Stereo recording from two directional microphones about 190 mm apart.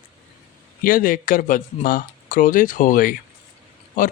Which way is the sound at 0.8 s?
45° left (ahead or behind).